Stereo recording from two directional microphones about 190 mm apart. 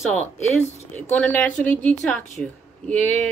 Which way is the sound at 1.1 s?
10° left (ahead or behind).